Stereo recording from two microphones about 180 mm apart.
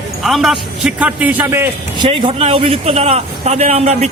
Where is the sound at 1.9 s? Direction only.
30° right (ahead or behind).